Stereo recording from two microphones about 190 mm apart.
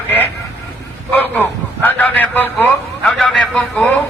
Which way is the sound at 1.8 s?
10° left (ahead or behind).